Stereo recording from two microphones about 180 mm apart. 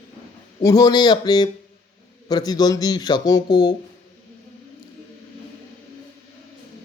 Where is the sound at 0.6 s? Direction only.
20° left (ahead or behind).